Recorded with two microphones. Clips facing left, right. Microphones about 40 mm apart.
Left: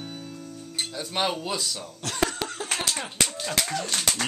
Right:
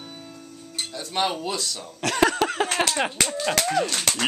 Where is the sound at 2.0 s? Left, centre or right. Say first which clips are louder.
Right 7 dB; right.